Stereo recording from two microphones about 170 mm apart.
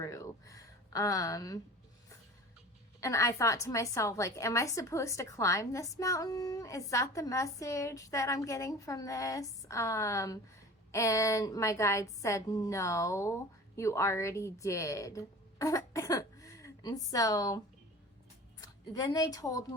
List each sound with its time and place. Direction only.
0.0 s a sound: 20° left (ahead or behind)
3.0 s a woman's voice: 20° left (ahead or behind)
18.6 s a woman's voice: 20° left (ahead or behind)